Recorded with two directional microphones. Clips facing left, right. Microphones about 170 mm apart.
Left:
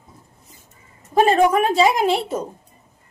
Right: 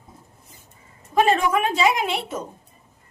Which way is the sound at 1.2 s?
40° left (ahead or behind).